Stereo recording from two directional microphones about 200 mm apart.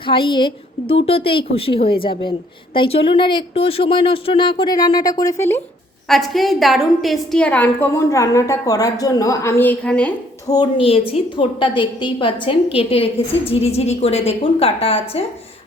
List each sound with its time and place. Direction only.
0.0 s a woman's voice: 25° left (ahead or behind)
6.1 s a woman's voice: centre (ahead or behind)
10.4 s a woman's voice: 20° left (ahead or behind)